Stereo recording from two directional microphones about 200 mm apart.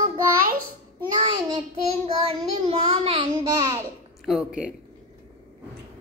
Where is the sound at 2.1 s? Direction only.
30° right (ahead or behind).